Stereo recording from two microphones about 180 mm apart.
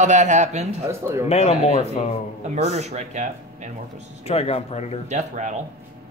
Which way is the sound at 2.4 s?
40° right (ahead or behind).